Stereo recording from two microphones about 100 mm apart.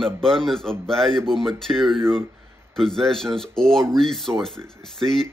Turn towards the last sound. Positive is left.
turn(degrees=5)  # may be behind; listen again after turning